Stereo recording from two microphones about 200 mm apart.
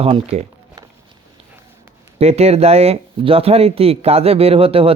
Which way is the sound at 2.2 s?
30° right (ahead or behind).